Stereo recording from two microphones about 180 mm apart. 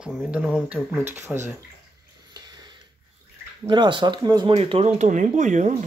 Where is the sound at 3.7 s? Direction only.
25° right (ahead or behind); by 5.7 s 40° right (ahead or behind).